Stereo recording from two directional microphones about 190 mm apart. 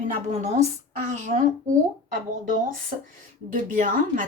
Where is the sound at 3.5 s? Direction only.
45° right (ahead or behind).